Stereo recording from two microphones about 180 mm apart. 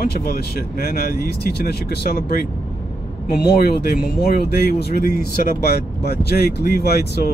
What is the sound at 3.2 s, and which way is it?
Speech, 60° left (ahead or behind).